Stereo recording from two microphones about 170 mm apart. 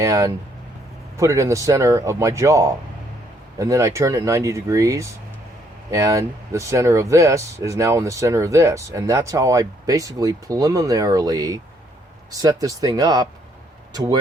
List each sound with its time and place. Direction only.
0.0 s speech: 20° right (ahead or behind)